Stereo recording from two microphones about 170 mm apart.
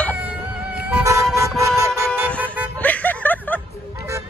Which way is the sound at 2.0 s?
10° right (ahead or behind).